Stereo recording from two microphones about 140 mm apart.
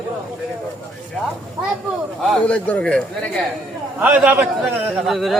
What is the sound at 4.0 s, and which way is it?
A man's voice, 10° right (ahead or behind).